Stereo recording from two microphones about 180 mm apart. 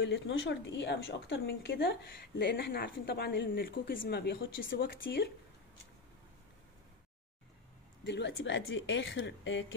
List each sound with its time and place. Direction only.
0.0 s a woman's voice: 80° left
8.0 s a woman's voice: 85° left